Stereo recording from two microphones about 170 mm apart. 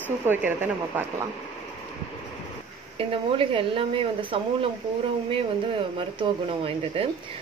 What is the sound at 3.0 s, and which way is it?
Speech, 35° right (ahead or behind).